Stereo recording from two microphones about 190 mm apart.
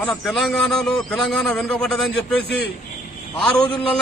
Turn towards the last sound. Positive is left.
turn(degrees=5)  # may be behind; listen again after turning